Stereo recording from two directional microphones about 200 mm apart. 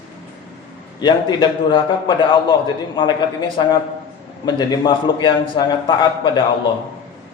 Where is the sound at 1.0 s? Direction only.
25° left (ahead or behind).